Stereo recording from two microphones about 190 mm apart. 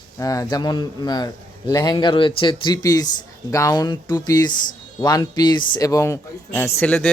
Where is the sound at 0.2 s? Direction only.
20° left (ahead or behind).